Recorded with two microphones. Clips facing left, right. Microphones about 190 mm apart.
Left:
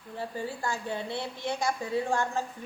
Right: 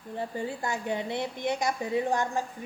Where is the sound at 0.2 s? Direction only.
20° right (ahead or behind).